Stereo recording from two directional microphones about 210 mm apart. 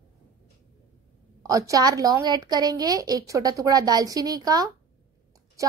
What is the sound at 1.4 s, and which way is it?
A woman's voice, 15° right (ahead or behind).